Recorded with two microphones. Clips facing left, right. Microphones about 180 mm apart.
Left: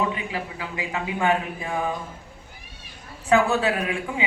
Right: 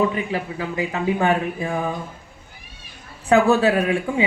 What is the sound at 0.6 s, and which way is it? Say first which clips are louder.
A man's voice: right 7 dB; 35° right (ahead or behind).